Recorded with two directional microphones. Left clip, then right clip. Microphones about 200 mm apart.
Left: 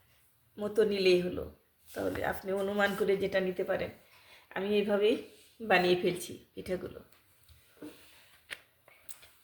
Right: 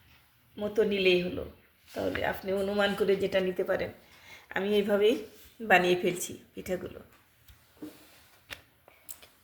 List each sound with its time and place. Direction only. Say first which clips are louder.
0.5 s speech: right 1 dB; centre (ahead or behind)
5.6 s a woman's voice: right 3 dB; 5° left (ahead or behind)